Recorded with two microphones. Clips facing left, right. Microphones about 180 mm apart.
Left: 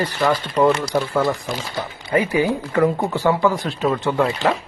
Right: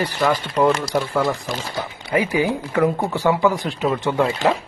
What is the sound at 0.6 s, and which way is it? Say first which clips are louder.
Speech: left 1 dB; 5° right (ahead or behind).